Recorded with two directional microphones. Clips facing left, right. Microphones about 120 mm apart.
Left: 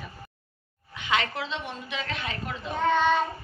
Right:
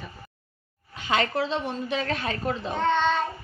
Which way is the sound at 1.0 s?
35° right (ahead or behind).